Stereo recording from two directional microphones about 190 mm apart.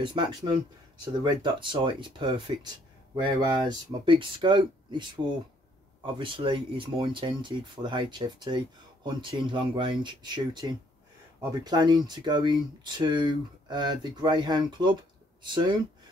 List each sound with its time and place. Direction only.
0.0 s speech: 25° right (ahead or behind)